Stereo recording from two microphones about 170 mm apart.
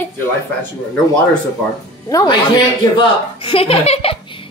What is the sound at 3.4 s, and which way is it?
Speech, 35° left (ahead or behind).